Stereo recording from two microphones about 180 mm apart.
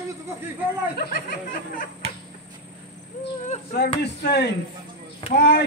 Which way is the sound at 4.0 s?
70° left (ahead or behind).